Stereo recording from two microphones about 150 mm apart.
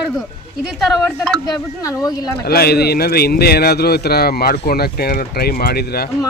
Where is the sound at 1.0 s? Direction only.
5° left (ahead or behind).